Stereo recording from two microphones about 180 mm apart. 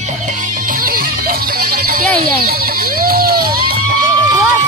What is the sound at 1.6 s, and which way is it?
Music, 55° right (ahead or behind).